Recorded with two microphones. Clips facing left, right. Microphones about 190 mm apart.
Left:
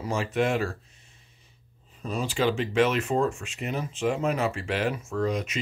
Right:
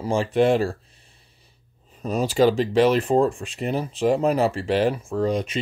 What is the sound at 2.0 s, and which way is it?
Speech, 40° right (ahead or behind).